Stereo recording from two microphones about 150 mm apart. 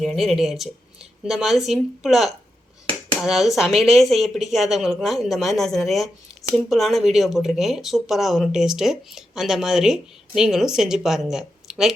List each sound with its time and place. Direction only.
0.0 s speech: centre (ahead or behind)